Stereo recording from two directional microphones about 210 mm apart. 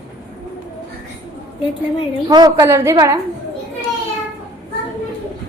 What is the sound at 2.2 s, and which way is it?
Speech, 20° right (ahead or behind).